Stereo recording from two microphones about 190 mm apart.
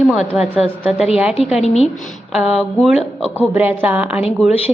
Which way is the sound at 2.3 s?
5° right (ahead or behind).